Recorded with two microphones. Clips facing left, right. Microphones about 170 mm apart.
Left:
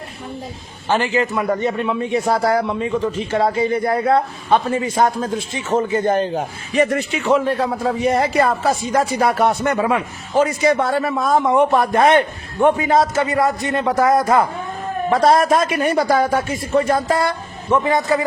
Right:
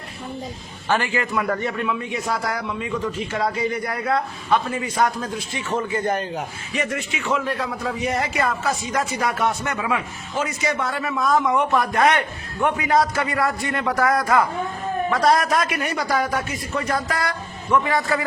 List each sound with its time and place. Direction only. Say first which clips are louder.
0.9 s a man's voice: left 4 dB; 20° left (ahead or behind)